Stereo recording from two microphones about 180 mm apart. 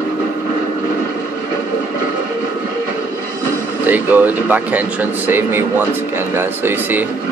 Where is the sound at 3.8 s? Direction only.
10° right (ahead or behind).